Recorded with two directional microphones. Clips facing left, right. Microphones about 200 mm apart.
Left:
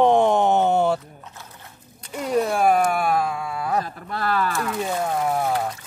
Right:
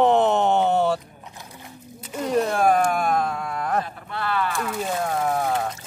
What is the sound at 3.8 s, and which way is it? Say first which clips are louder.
Speech: left 1 dB; 40° left (ahead or behind).